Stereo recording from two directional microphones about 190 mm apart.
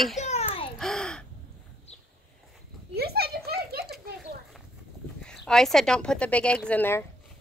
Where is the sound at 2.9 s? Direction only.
55° right (ahead or behind).